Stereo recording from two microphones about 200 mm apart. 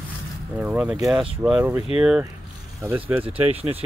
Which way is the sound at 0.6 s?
5° right (ahead or behind).